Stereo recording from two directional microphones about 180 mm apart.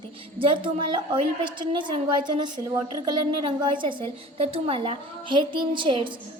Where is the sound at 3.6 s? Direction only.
25° right (ahead or behind).